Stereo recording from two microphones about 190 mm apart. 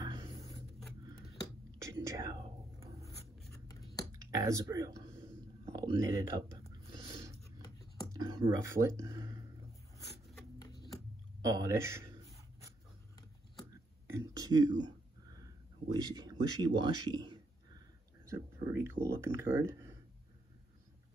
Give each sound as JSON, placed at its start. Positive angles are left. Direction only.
{"t": 0.0, "sound": "a sound", "side_deg": -20}
{"t": 1.8, "sound": "whispering", "side_deg": -15}
{"t": 4.4, "sound": "speech", "side_deg": -15}
{"t": 5.7, "sound": "a sound", "side_deg": -20}
{"t": 8.3, "sound": "speech", "side_deg": -20}
{"t": 10.6, "sound": "a sound", "side_deg": 20}
{"t": 11.4, "sound": "speech", "side_deg": -15}
{"t": 14.1, "sound": "speech", "side_deg": -15}
{"t": 15.9, "sound": "a man's voice", "side_deg": -20}